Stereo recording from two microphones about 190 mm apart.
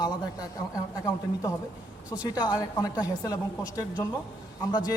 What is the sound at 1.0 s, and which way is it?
A woman's voice, 20° left (ahead or behind).